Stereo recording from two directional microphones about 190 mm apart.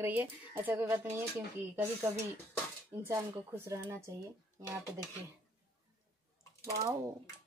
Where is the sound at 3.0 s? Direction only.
10° right (ahead or behind).